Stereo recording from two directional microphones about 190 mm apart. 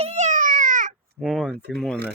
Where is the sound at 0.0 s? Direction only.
35° right (ahead or behind).